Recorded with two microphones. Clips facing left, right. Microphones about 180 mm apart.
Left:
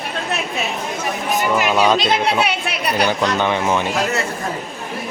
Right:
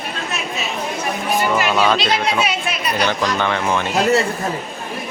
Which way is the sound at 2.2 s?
65° left (ahead or behind).